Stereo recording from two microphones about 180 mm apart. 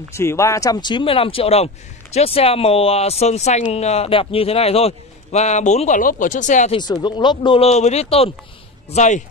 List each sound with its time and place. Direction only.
0.1 s a man's voice: 15° left (ahead or behind); by 6.7 s 45° left (ahead or behind)
6.7 s a man's voice: 25° left (ahead or behind); by 9.2 s 40° left (ahead or behind)